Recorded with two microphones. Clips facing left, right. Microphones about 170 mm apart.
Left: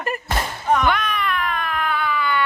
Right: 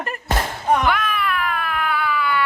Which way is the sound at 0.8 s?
5° right (ahead or behind).